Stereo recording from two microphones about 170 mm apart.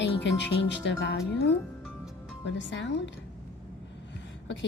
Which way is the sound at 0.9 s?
90° left.